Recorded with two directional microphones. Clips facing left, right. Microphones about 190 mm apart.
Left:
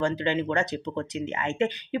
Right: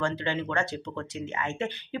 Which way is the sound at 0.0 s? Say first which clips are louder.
Left 4 dB; 20° left (ahead or behind).